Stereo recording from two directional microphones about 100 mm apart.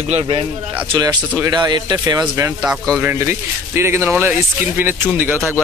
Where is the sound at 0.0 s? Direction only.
75° right (ahead or behind).